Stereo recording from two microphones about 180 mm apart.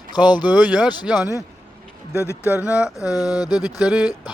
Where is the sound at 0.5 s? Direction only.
5° right (ahead or behind).